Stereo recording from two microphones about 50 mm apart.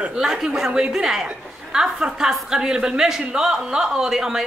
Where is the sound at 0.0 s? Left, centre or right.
Centre.